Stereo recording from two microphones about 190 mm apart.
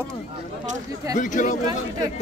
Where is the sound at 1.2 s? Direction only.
40° left (ahead or behind).